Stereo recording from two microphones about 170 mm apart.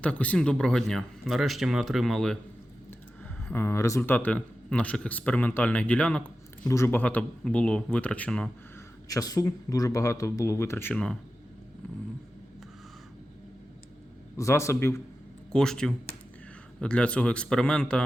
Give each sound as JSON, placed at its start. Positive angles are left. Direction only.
{"t": 0.0, "sound": "speech", "side_deg": 10}
{"t": 3.5, "sound": "a man's voice", "side_deg": 15}
{"t": 9.0, "sound": "a man's voice", "side_deg": 20}
{"t": 14.3, "sound": "a man's voice", "side_deg": 15}
{"t": 15.5, "sound": "a man's voice", "side_deg": 5}